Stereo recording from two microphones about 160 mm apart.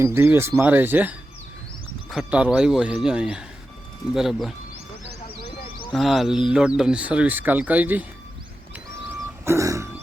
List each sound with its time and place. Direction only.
0.0 s speech: 15° right (ahead or behind)
5.9 s speech: centre (ahead or behind)
9.4 s a sound: 15° right (ahead or behind)